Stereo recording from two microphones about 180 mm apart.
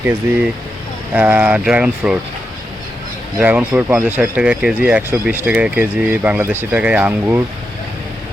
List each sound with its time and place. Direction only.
1.1 s speech: 10° right (ahead or behind)
3.3 s speech: 10° right (ahead or behind)